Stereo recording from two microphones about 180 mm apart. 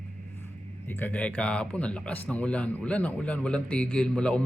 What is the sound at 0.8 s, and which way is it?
A man's voice, 10° left (ahead or behind).